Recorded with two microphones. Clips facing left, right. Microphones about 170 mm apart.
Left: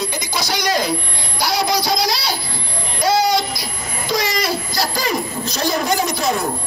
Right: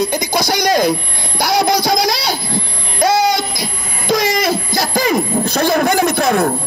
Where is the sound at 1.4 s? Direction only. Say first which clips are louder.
Right 5 dB; 50° right (ahead or behind).